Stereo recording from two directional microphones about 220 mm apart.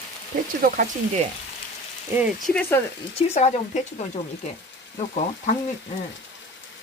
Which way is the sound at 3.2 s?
30° left (ahead or behind).